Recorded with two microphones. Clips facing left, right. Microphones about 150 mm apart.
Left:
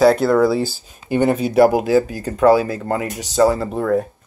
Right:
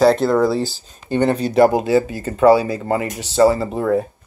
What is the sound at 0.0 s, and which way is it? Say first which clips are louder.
Speech: left 1 dB; 5° left (ahead or behind).